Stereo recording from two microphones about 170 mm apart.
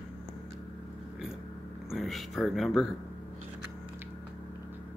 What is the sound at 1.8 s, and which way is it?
Speech, centre (ahead or behind).